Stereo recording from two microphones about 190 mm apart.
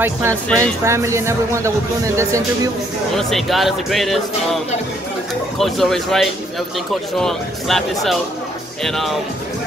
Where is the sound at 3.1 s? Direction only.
Centre (ahead or behind).